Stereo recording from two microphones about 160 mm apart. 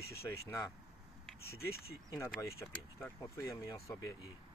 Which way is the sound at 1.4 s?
75° left (ahead or behind).